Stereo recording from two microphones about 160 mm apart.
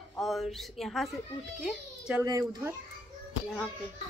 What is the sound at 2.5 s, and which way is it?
Speech, 15° right (ahead or behind).